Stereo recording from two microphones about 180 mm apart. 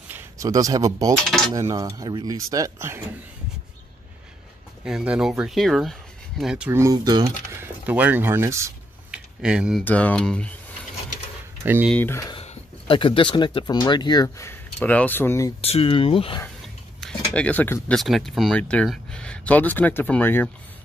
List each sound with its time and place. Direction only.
0.1 s speech: 20° right (ahead or behind)
4.8 s speech: 5° right (ahead or behind)
9.1 s a sound: 5° right (ahead or behind)
9.8 s speech: 10° left (ahead or behind)
11.6 s speech: 10° right (ahead or behind)
11.9 s speech: 10° left (ahead or behind)
12.4 s speech: 30° left (ahead or behind); by 15.5 s 15° left (ahead or behind)
15.6 s speech: 35° left (ahead or behind)
16.6 s a sound: 5° left (ahead or behind)
17.9 s speech: centre (ahead or behind)